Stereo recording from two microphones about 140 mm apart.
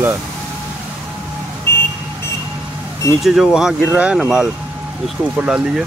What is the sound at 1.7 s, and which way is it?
Vehicle, 15° left (ahead or behind).